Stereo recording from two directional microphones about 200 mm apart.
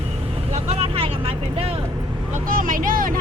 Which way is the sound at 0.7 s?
30° right (ahead or behind).